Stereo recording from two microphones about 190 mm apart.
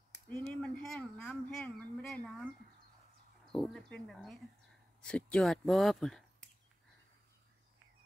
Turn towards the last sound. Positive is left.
turn(degrees=0)  # may be behind; listen again after turning